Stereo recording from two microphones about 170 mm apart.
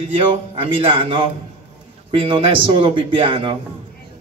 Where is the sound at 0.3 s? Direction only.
30° right (ahead or behind).